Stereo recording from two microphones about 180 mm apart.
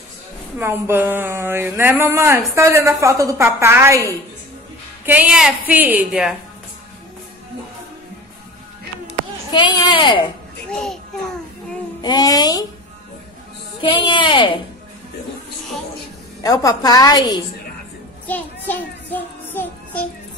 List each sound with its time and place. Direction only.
0.6 s speech: 10° right (ahead or behind)
5.0 s speech: 10° right (ahead or behind)
9.5 s a woman's voice: 25° left (ahead or behind)
12.0 s a woman's voice: 20° left (ahead or behind)
13.7 s a woman's voice: 25° left (ahead or behind)
16.4 s a woman's voice: 20° left (ahead or behind)
18.2 s music: 10° left (ahead or behind)